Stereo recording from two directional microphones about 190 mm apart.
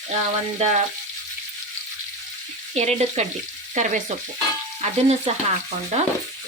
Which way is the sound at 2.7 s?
35° right (ahead or behind).